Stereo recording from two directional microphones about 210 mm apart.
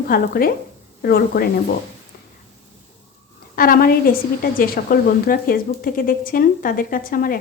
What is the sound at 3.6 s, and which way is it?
A woman's voice, 45° left (ahead or behind).